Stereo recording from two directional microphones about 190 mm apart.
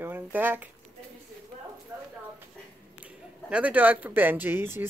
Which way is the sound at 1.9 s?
10° right (ahead or behind).